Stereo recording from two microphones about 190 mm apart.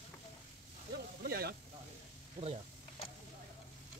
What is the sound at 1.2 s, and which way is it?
Speech, 55° right (ahead or behind).